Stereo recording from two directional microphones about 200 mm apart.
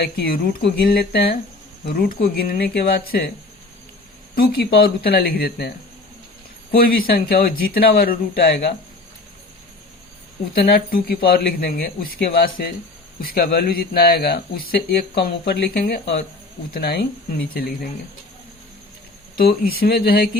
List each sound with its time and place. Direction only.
0.0 s speech: 50° left (ahead or behind)
4.4 s speech: 50° left (ahead or behind)
10.5 s speech: 50° left (ahead or behind)
19.4 s speech: 50° left (ahead or behind)